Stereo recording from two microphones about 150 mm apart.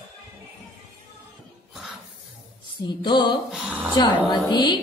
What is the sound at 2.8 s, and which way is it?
Music, 30° left (ahead or behind).